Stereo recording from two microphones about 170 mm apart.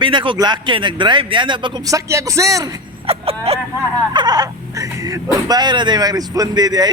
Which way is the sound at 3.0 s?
35° right (ahead or behind).